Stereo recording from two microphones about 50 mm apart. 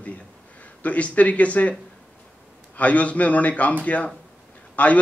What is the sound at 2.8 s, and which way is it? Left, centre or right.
A man's voice, left.